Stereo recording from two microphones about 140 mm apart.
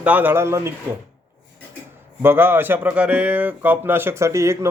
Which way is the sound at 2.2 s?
15° right (ahead or behind).